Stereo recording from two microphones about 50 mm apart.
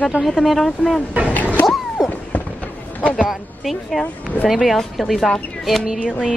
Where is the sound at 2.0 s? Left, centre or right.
Centre.